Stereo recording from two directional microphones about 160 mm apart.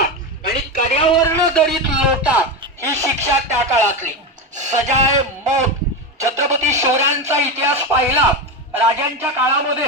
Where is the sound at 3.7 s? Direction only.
50° right (ahead or behind).